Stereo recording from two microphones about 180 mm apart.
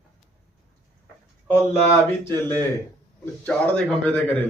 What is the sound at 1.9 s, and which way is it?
Speech, 15° left (ahead or behind).